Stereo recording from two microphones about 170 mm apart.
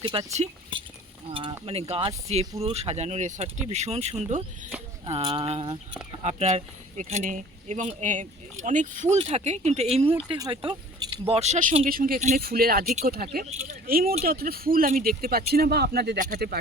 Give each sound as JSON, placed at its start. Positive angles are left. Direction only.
{"t": 0.0, "sound": "speech", "side_deg": -30}
{"t": 1.3, "sound": "speech", "side_deg": -30}
{"t": 11.9, "sound": "speech", "side_deg": -60}
{"t": 12.4, "sound": "speech", "side_deg": -65}